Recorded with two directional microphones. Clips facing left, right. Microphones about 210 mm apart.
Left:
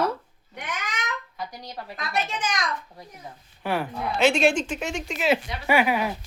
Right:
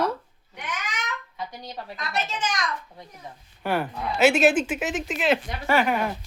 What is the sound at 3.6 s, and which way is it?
Speech, centre (ahead or behind).